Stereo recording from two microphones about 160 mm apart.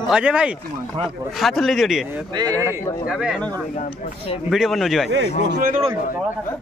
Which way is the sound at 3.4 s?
10° left (ahead or behind).